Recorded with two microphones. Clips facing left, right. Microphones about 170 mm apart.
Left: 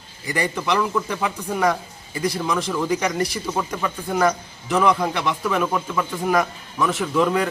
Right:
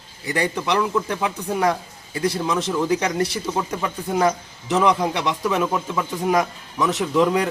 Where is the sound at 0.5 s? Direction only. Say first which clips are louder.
Left 1 dB; 15° right (ahead or behind).